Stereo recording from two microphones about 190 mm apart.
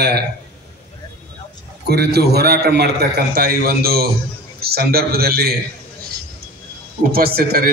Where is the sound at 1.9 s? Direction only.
55° right (ahead or behind).